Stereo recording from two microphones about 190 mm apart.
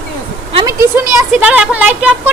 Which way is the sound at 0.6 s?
15° right (ahead or behind).